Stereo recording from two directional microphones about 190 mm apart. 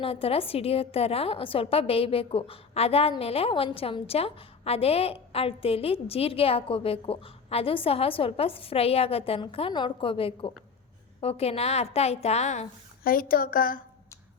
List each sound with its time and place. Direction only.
0.0 s a woman's voice: 30° left (ahead or behind)
13.0 s a woman's voice: 50° left (ahead or behind)